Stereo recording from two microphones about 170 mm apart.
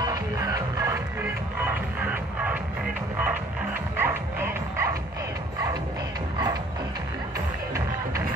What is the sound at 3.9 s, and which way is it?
Music, 10° right (ahead or behind).